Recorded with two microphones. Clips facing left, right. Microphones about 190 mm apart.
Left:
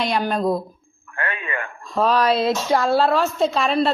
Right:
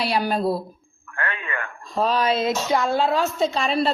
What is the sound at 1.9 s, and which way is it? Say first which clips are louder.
Speech: left 3 dB; centre (ahead or behind).